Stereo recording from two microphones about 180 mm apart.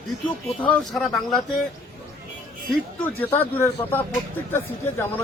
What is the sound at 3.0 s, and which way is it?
Speech, 10° left (ahead or behind).